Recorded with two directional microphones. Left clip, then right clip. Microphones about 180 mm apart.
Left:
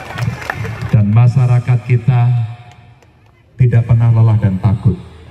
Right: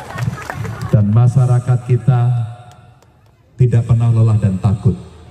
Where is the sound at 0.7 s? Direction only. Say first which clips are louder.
Even; 40° right (ahead or behind).